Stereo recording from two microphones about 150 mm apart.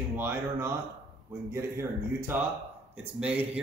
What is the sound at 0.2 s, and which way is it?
Speech, 15° right (ahead or behind).